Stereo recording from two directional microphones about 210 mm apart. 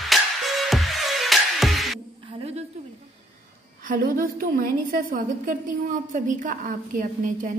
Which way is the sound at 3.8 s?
40° right (ahead or behind).